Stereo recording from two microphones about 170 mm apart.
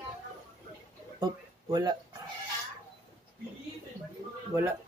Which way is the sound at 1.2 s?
25° right (ahead or behind).